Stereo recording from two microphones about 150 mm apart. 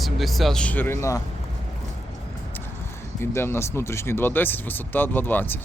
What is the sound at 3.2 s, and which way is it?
Speech, 15° left (ahead or behind).